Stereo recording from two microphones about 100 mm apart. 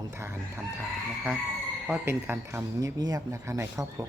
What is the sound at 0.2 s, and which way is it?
Speech, 25° right (ahead or behind).